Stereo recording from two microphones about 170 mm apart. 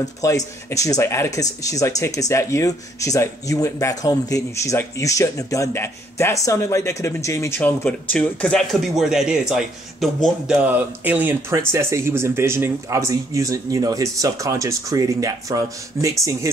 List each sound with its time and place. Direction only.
0.0 s speech: 20° left (ahead or behind); by 16.4 s 20° right (ahead or behind)